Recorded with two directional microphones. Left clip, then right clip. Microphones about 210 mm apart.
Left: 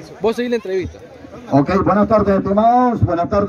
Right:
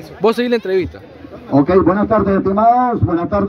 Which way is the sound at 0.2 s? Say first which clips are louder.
Right 4 dB; 30° right (ahead or behind).